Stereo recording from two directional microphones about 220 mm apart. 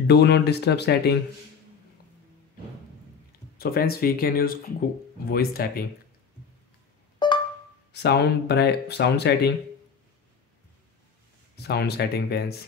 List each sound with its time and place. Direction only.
0.0 s speech: 50° left (ahead or behind)
3.5 s speech: 45° left (ahead or behind)
7.2 s music: 20° left (ahead or behind)
7.9 s speech: 50° left (ahead or behind)
11.5 s speech: 50° left (ahead or behind)